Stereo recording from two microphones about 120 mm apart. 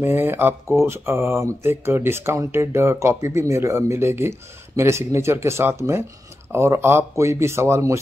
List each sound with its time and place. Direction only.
0.0 s speech: 20° right (ahead or behind)